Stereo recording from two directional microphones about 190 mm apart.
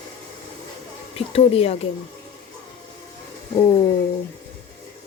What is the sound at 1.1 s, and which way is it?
Speech, 30° left (ahead or behind).